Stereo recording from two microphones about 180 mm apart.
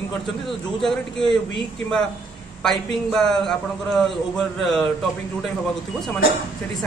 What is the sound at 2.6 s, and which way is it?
A man's voice, 5° left (ahead or behind).